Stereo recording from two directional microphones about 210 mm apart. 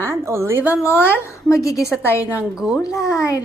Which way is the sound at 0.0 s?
10° right (ahead or behind).